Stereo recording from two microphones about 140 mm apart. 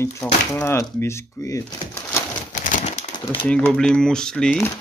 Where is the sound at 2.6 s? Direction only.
65° left (ahead or behind).